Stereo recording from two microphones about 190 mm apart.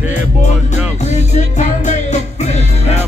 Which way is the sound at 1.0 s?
40° left (ahead or behind).